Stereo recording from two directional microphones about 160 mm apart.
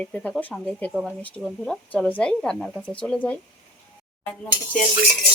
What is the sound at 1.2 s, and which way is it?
Speech, 5° left (ahead or behind).